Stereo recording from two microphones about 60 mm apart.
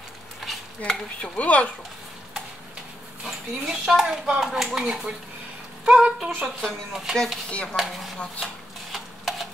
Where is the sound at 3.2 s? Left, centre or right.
Centre.